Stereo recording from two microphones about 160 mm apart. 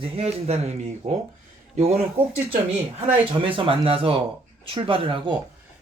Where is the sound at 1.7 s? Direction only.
40° right (ahead or behind).